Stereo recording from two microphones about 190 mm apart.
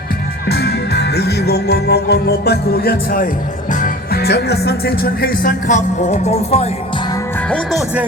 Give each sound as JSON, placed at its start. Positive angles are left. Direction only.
{"t": 0.4, "sound": "music", "side_deg": 55}
{"t": 7.5, "sound": "speech", "side_deg": 0}